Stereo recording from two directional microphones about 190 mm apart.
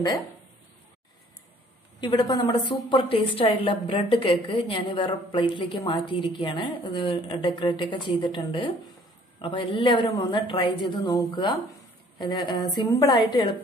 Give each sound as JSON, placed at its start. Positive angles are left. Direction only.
{"t": 2.0, "sound": "a woman's voice", "side_deg": 20}